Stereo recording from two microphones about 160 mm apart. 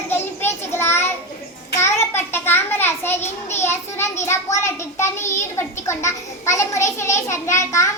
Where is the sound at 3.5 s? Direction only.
15° left (ahead or behind).